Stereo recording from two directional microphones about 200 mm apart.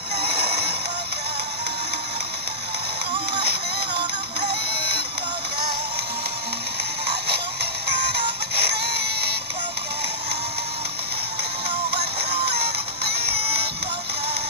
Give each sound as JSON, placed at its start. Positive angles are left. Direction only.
{"t": 0.2, "sound": "music", "side_deg": -55}
{"t": 4.5, "sound": "music", "side_deg": -55}
{"t": 8.1, "sound": "music", "side_deg": -55}
{"t": 12.2, "sound": "music", "side_deg": -55}